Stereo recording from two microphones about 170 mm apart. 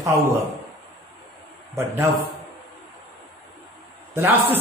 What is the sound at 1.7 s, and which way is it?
Speech, 15° right (ahead or behind).